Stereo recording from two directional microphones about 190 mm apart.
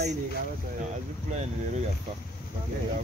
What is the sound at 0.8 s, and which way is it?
Speech, 40° right (ahead or behind).